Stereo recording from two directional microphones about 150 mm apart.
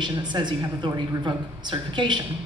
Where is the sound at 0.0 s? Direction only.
30° right (ahead or behind).